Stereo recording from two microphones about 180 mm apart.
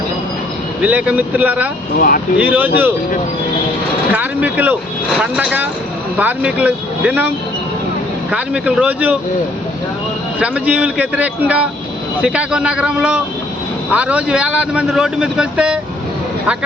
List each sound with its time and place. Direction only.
0.8 s a man's voice: 10° right (ahead or behind)
2.0 s speech: 55° left (ahead or behind)
2.4 s a man's voice: 10° right (ahead or behind)
4.1 s a man's voice: 10° right (ahead or behind)
10.4 s a man's voice: 5° right (ahead or behind)